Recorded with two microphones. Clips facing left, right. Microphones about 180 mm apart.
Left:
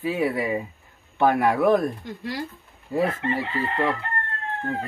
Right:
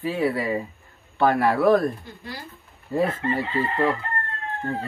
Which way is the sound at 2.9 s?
15° left (ahead or behind).